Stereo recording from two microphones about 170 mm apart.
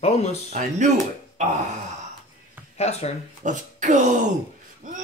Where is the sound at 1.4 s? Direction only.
45° right (ahead or behind).